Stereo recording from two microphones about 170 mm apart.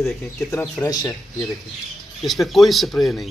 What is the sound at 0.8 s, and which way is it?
Speech, 20° left (ahead or behind).